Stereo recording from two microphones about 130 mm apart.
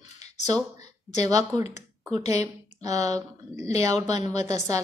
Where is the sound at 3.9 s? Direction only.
60° left (ahead or behind).